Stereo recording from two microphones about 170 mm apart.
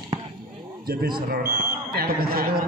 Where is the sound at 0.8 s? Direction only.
60° right (ahead or behind).